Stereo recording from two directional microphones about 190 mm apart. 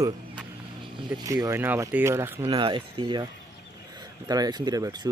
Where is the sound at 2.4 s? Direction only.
25° right (ahead or behind).